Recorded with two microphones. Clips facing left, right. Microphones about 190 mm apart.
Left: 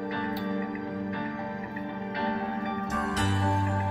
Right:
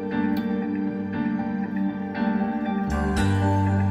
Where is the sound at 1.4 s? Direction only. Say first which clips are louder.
Right 9 dB; 50° right (ahead or behind).